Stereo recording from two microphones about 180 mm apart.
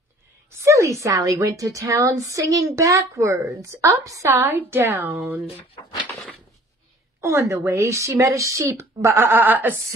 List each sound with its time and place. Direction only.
0.6 s a woman's voice: 15° right (ahead or behind)
7.2 s a woman's voice: 15° right (ahead or behind)